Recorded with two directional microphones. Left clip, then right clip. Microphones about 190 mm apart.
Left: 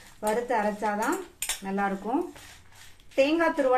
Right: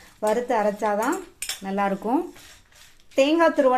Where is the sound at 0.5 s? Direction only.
45° right (ahead or behind).